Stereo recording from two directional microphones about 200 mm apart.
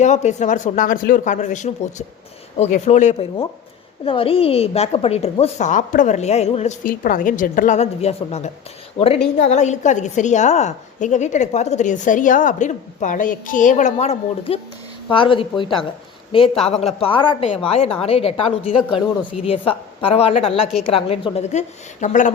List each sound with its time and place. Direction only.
0.0 s a woman's voice: 35° left (ahead or behind)
9.5 s a woman's voice: 35° left (ahead or behind)